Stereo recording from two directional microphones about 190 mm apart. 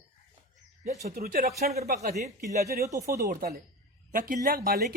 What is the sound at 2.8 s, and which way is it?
Speech, 15° right (ahead or behind).